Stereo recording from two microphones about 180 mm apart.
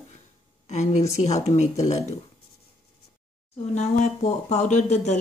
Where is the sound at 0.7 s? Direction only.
40° left (ahead or behind).